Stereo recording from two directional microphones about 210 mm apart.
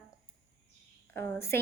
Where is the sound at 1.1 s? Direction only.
10° left (ahead or behind).